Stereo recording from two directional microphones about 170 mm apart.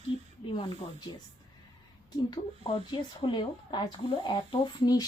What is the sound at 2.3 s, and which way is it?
Speech, 30° left (ahead or behind).